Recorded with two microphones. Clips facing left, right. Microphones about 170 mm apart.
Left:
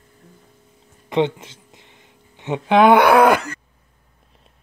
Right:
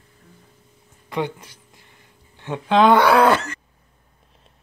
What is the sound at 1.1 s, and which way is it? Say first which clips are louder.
Speech: left 6 dB; 25° left (ahead or behind).